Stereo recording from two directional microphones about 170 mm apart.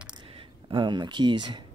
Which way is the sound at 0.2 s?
30° right (ahead or behind).